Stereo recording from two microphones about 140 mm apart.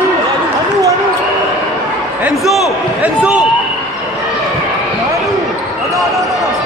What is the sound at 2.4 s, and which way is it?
Speech, centre (ahead or behind).